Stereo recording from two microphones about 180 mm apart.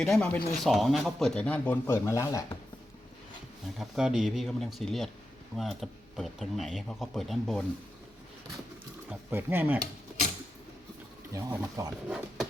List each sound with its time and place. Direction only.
0.0 s speech: 5° left (ahead or behind)
3.8 s speech: 5° right (ahead or behind)
9.0 s speech: 10° right (ahead or behind)
11.3 s speech: 15° right (ahead or behind)
12.0 s speech: 5° right (ahead or behind)